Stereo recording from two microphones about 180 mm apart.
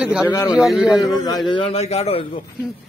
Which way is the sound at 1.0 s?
20° left (ahead or behind).